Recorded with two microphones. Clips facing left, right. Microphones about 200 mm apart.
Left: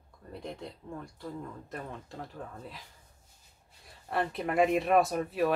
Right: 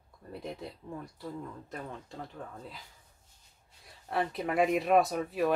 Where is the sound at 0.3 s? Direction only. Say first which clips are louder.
Right 1 dB; 5° right (ahead or behind).